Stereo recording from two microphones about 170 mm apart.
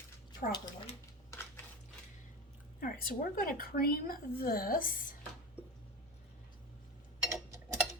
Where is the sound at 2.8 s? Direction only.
60° left (ahead or behind).